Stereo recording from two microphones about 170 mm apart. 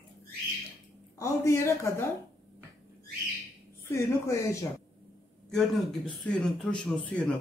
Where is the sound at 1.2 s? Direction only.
15° left (ahead or behind).